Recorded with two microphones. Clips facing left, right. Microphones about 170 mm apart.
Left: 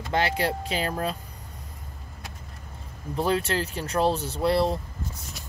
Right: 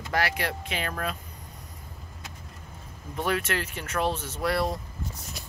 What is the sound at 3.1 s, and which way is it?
Speech, 30° left (ahead or behind).